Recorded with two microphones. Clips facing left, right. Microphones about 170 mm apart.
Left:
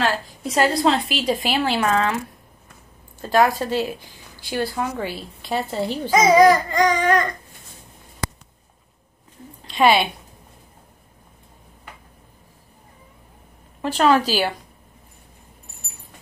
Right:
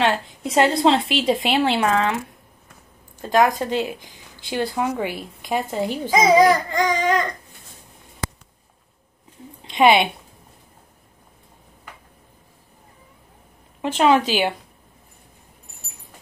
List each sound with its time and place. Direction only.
0.0 s a woman's voice: 25° right (ahead or behind)
3.2 s a woman's voice: 20° right (ahead or behind)
5.7 s baby cry: 10° right (ahead or behind)
9.7 s a woman's voice: 20° right (ahead or behind)
13.7 s a woman's voice: 20° right (ahead or behind)